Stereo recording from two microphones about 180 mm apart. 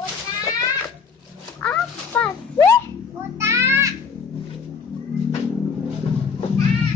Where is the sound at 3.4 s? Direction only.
15° right (ahead or behind).